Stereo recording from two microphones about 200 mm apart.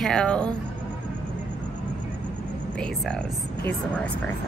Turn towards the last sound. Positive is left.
turn(degrees=5)  # may be behind; listen again after turning